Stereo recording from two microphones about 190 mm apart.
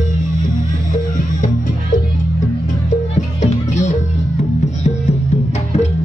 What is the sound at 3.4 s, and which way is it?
Music, 40° left (ahead or behind).